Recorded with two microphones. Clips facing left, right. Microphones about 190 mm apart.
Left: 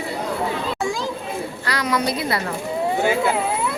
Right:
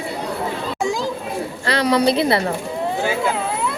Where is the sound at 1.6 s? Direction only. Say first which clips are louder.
Right 7 dB; 30° right (ahead or behind).